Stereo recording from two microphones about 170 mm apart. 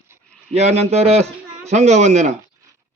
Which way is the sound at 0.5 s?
40° right (ahead or behind).